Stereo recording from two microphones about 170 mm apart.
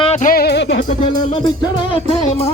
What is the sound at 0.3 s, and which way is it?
Music, 65° left (ahead or behind).